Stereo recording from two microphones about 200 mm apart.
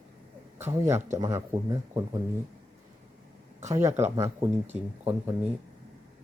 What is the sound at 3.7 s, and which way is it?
Speech, 15° right (ahead or behind).